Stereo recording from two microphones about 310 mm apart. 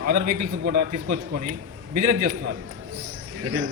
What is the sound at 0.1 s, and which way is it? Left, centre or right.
A man's voice, right.